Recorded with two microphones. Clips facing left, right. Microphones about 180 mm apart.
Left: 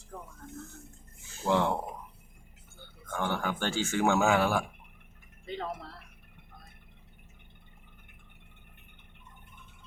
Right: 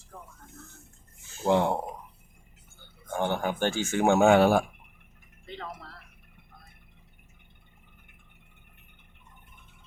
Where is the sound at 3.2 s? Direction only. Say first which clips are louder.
Right 4 dB; 20° right (ahead or behind).